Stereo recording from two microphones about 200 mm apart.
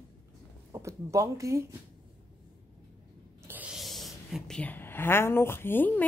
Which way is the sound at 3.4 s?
5° right (ahead or behind).